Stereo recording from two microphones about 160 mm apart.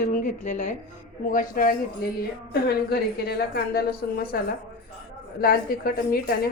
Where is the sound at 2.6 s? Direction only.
80° left.